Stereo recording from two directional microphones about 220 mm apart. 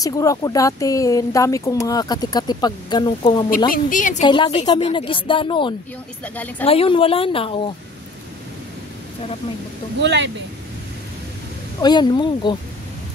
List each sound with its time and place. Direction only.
0.0 s speech: 15° left (ahead or behind)
3.7 s a woman's voice: 35° left (ahead or behind)
4.2 s a woman's voice: 20° left (ahead or behind)
6.2 s speech: 5° left (ahead or behind)
6.6 s a woman's voice: 25° left (ahead or behind)
9.9 s speech: 55° right (ahead or behind)
11.8 s a woman's voice: 20° left (ahead or behind)